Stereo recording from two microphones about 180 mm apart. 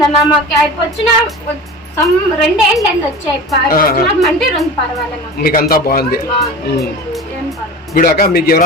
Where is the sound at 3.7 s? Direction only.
55° left (ahead or behind).